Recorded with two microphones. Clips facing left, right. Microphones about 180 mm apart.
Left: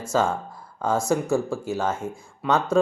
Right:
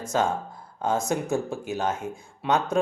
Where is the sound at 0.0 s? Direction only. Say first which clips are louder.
Left 2 dB; 20° right (ahead or behind).